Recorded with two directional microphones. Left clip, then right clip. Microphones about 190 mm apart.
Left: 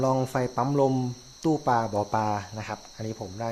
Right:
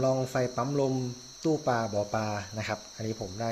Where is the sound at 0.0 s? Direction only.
15° left (ahead or behind).